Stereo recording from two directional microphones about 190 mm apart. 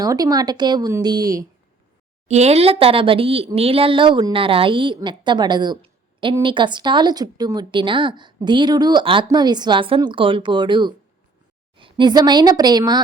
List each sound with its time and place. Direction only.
0.0 s a woman's voice: 20° right (ahead or behind)
2.2 s a woman's voice: 35° right (ahead or behind)